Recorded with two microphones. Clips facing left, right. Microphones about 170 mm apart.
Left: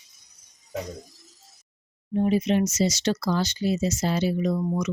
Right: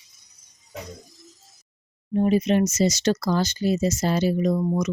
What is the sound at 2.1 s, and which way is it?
Speech, 45° right (ahead or behind).